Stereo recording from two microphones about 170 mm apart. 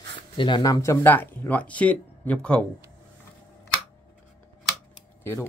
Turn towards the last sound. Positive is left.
turn(degrees=15)  # may be behind; listen again after turning